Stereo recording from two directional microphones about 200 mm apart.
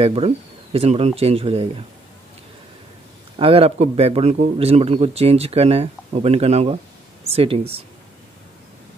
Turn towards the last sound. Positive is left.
turn(degrees=-30)  # may be behind; listen again after turning